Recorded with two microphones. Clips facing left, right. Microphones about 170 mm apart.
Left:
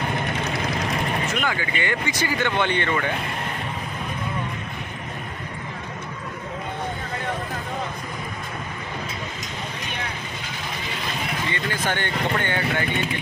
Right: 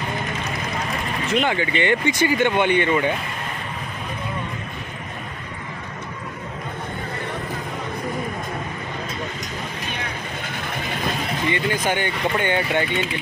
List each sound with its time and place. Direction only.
1.3 s speech: 25° right (ahead or behind)
11.4 s speech: 15° right (ahead or behind)